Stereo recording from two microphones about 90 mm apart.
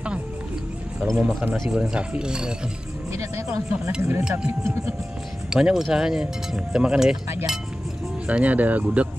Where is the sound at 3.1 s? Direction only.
30° right (ahead or behind).